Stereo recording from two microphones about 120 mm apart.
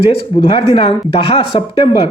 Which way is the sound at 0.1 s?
45° left (ahead or behind).